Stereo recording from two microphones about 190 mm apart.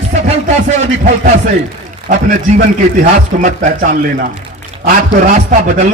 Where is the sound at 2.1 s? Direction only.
45° right (ahead or behind).